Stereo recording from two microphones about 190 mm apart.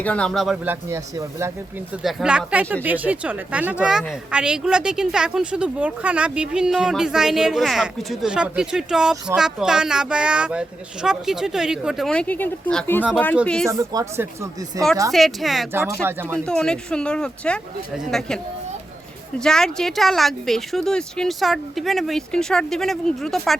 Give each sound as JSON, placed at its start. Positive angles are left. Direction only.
{"t": 0.0, "sound": "speech", "side_deg": 5}
{"t": 2.0, "sound": "speech", "side_deg": -5}
{"t": 13.7, "sound": "speech", "side_deg": -15}
{"t": 15.1, "sound": "speech", "side_deg": 0}
{"t": 15.7, "sound": "speech", "side_deg": -15}
{"t": 16.5, "sound": "speech", "side_deg": 5}
{"t": 19.4, "sound": "speech", "side_deg": 5}